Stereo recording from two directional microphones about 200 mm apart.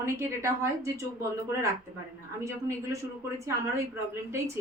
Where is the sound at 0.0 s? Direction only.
15° right (ahead or behind).